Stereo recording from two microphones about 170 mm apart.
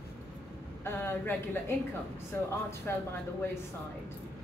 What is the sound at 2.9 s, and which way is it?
Speech, 10° left (ahead or behind).